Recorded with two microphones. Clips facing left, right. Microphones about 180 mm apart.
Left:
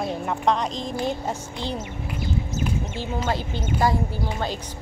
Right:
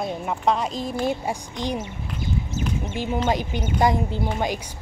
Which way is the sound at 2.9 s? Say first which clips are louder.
Right 3 dB; 15° right (ahead or behind).